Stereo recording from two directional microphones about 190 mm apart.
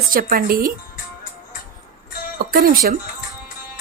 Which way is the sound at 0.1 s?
50° right (ahead or behind).